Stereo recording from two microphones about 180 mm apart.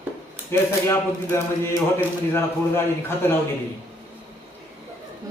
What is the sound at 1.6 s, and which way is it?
Speech, 15° left (ahead or behind).